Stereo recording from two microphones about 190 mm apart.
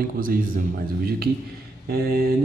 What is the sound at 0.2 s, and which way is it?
A man's voice, 50° right (ahead or behind).